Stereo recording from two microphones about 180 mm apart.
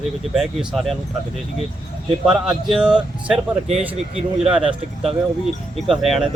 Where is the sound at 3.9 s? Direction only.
35° right (ahead or behind).